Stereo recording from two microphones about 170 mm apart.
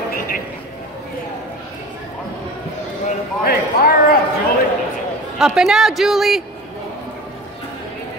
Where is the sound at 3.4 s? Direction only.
65° left (ahead or behind).